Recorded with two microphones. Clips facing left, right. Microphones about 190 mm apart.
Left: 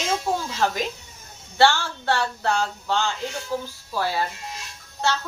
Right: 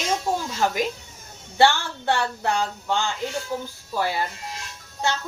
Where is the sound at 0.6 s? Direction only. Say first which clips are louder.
Right 2 dB; 10° right (ahead or behind).